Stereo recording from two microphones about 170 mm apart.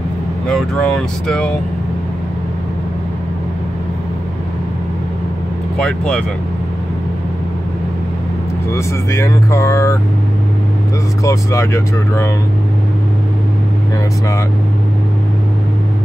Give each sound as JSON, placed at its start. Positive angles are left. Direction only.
{"t": 0.5, "sound": "speech", "side_deg": 5}
{"t": 5.8, "sound": "speech", "side_deg": 5}
{"t": 8.7, "sound": "speech", "side_deg": 15}
{"t": 11.2, "sound": "speech", "side_deg": 15}